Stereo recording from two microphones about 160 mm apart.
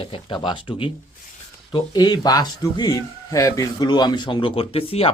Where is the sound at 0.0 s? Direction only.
30° left (ahead or behind).